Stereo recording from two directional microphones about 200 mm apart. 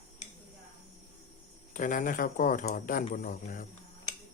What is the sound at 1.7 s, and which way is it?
Speech, 40° left (ahead or behind).